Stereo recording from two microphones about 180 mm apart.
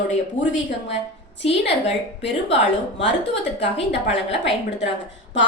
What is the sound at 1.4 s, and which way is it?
Speech, 35° left (ahead or behind).